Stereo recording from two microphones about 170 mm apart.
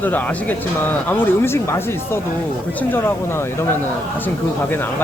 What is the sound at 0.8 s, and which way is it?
Speech, 10° left (ahead or behind).